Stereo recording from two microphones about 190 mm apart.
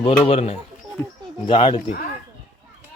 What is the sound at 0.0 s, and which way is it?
Speech, 30° left (ahead or behind).